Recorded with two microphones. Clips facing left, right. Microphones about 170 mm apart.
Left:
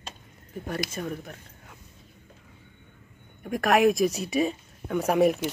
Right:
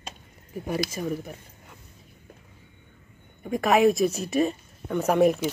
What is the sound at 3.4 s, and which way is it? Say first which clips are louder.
A woman's voice: right 1 dB; centre (ahead or behind).